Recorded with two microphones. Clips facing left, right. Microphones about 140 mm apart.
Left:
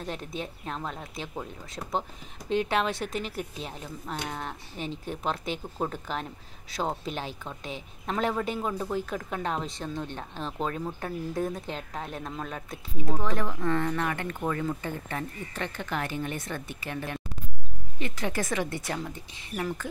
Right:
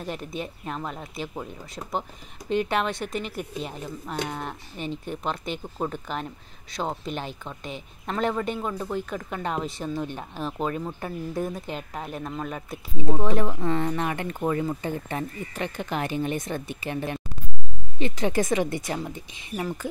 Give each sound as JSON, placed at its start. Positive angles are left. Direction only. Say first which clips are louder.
{"t": 0.0, "sound": "speech", "louder": "right 2 dB", "side_deg": -5}
{"t": 13.0, "sound": "speech", "louder": "right 5 dB", "side_deg": -20}